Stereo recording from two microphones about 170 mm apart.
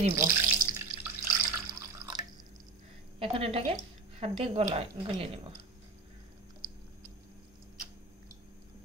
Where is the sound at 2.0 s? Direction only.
85° left.